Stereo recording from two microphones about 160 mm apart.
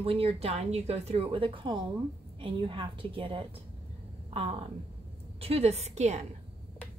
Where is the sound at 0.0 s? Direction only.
35° right (ahead or behind).